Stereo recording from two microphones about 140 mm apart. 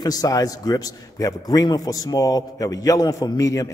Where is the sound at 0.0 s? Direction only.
25° left (ahead or behind).